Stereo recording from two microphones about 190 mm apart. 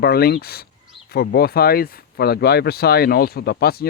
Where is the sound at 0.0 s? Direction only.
55° left (ahead or behind).